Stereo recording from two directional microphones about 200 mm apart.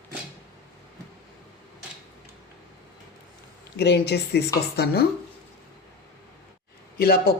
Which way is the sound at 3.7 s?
55° left (ahead or behind).